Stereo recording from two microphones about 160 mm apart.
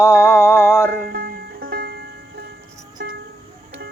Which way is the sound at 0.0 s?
15° left (ahead or behind).